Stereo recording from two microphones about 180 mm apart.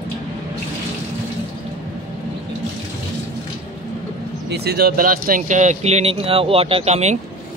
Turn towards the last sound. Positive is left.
turn(degrees=-40)  # may be behind; listen again after turning